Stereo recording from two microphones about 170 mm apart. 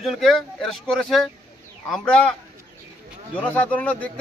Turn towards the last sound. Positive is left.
turn(degrees=10)  # may be behind; listen again after turning